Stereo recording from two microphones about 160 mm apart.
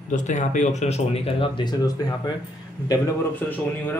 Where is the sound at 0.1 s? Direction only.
50° left (ahead or behind); by 2.1 s 25° left (ahead or behind).